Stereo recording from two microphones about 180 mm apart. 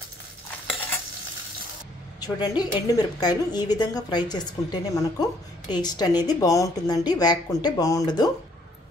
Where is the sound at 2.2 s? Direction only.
20° left (ahead or behind).